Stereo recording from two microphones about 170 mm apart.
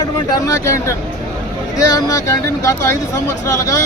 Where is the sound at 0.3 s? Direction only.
20° left (ahead or behind).